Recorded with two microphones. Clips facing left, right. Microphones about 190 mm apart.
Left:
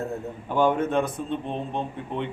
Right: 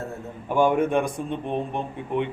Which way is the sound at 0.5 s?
10° right (ahead or behind).